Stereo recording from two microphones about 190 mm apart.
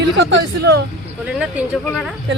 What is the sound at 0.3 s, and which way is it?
Speech, 60° right (ahead or behind).